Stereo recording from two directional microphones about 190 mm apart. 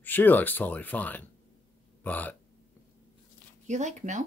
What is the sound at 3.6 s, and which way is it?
Speech, 40° right (ahead or behind).